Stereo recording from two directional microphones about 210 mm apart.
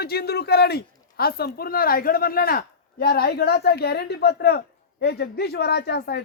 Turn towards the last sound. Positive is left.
turn(degrees=50)  # may be behind; listen again after turning